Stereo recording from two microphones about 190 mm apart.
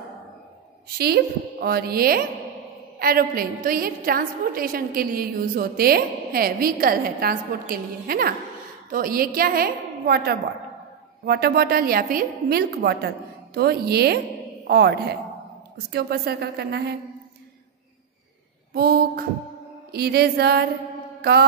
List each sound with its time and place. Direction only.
0.9 s a woman's voice: 55° right (ahead or behind)
18.7 s a woman's voice: 55° right (ahead or behind)
21.2 s mantra: 60° right (ahead or behind)